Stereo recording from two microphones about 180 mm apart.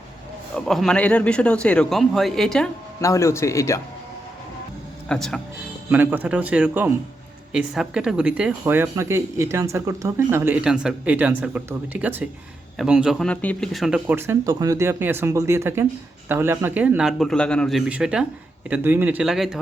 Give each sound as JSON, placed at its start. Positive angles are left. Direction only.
{"t": 0.5, "sound": "a man's voice", "side_deg": 5}
{"t": 3.0, "sound": "a man's voice", "side_deg": 15}
{"t": 5.0, "sound": "a man's voice", "side_deg": 5}
{"t": 5.9, "sound": "a man's voice", "side_deg": -10}